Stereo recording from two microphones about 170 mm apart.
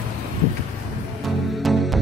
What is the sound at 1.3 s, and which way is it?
Music, centre (ahead or behind).